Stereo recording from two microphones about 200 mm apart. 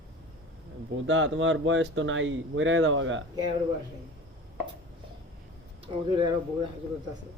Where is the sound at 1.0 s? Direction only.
70° right (ahead or behind).